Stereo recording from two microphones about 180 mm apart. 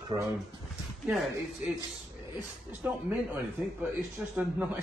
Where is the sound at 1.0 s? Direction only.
Centre (ahead or behind).